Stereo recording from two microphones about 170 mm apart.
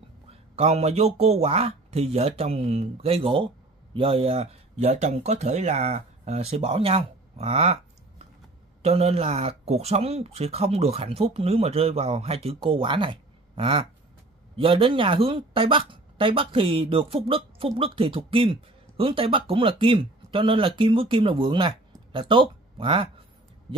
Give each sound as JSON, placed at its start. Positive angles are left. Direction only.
{"t": 0.3, "sound": "speech", "side_deg": -35}
{"t": 8.8, "sound": "speech", "side_deg": -35}